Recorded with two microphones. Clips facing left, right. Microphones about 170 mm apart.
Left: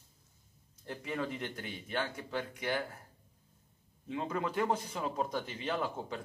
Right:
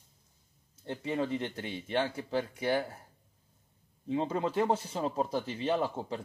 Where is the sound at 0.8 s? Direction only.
30° right (ahead or behind).